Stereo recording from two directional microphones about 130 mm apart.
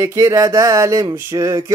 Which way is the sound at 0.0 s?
20° right (ahead or behind).